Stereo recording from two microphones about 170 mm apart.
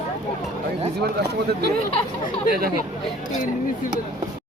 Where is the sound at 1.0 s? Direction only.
70° right (ahead or behind).